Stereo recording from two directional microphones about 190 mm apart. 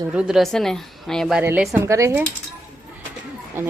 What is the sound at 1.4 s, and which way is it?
Speech, 10° right (ahead or behind).